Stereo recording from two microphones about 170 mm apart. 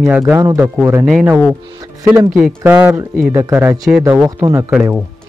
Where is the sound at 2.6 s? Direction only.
10° right (ahead or behind).